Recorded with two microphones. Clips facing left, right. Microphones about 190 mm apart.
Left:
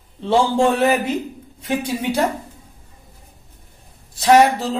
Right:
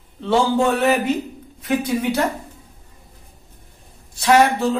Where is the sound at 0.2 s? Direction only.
30° left (ahead or behind).